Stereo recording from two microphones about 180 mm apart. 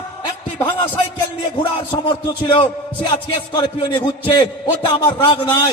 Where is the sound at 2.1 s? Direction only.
25° left (ahead or behind).